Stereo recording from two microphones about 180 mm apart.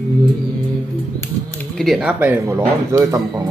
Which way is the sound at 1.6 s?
Centre (ahead or behind).